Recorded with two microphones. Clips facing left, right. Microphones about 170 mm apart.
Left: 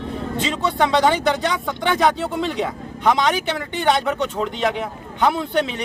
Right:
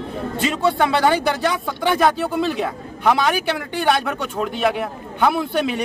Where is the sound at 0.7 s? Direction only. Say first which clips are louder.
Even; 5° right (ahead or behind).